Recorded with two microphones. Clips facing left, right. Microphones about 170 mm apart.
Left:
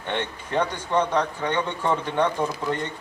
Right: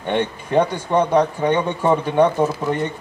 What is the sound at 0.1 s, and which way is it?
Speech, 15° right (ahead or behind).